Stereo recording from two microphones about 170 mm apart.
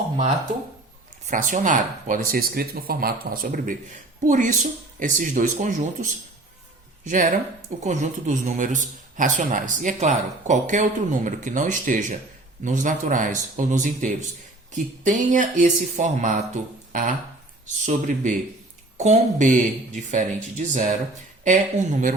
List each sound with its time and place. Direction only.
1.3 s speech: 50° right (ahead or behind)